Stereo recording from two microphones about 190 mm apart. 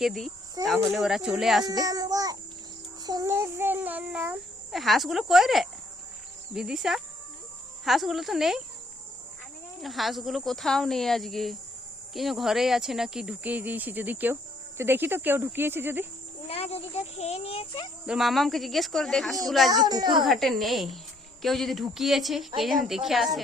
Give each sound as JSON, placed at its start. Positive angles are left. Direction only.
{"t": 0.0, "sound": "speech", "side_deg": 0}
{"t": 1.6, "sound": "a child's voice", "side_deg": -20}
{"t": 9.8, "sound": "a child's voice", "side_deg": 0}
{"t": 16.5, "sound": "speech", "side_deg": 35}
{"t": 18.0, "sound": "speech", "side_deg": 0}
{"t": 19.7, "sound": "a child's voice", "side_deg": -20}
{"t": 20.2, "sound": "speech", "side_deg": 0}